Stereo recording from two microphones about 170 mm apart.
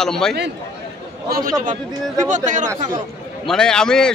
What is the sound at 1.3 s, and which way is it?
A man's voice, 55° right (ahead or behind).